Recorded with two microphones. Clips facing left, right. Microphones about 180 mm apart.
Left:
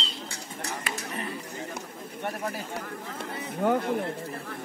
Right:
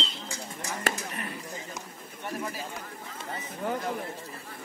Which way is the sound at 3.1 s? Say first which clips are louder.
Left 3 dB; 60° left (ahead or behind).